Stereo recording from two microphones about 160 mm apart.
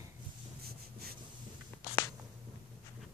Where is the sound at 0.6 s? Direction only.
70° right (ahead or behind).